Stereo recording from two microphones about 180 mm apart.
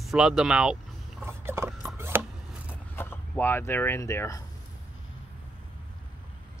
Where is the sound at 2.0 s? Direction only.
10° right (ahead or behind).